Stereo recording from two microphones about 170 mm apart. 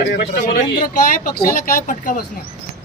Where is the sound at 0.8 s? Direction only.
55° left (ahead or behind).